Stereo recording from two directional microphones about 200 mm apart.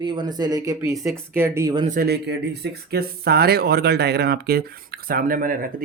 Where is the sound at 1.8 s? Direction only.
45° right (ahead or behind).